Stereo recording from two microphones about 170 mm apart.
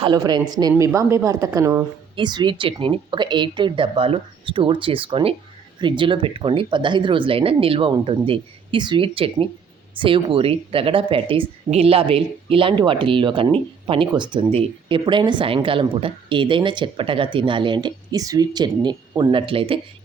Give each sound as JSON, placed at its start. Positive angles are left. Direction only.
{"t": 0.0, "sound": "speech", "side_deg": -25}